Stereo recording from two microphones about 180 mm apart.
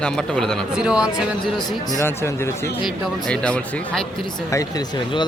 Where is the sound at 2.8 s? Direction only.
5° left (ahead or behind).